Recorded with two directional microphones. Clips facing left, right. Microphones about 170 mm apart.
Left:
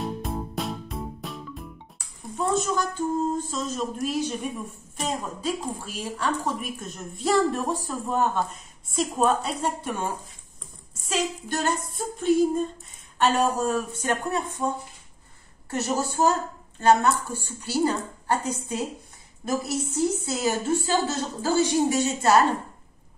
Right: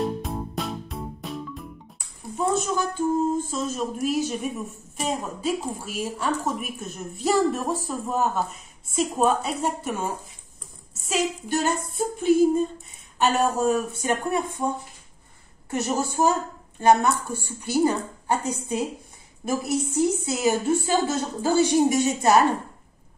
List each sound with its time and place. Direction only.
0.0 s music: centre (ahead or behind)
2.3 s a woman's voice: 5° right (ahead or behind)
15.7 s a woman's voice: 15° right (ahead or behind)
19.4 s a woman's voice: 10° right (ahead or behind)